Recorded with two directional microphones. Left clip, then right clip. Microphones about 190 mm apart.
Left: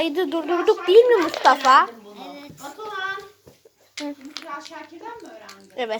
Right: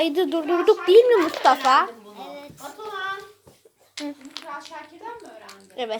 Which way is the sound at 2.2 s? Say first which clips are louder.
Right 1 dB; 25° right (ahead or behind).